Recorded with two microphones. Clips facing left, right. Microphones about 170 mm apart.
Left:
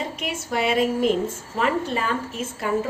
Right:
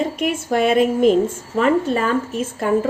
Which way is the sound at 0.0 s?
50° right (ahead or behind).